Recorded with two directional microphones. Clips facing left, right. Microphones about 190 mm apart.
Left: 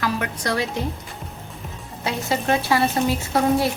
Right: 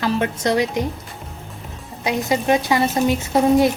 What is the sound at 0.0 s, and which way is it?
Speech, 25° right (ahead or behind).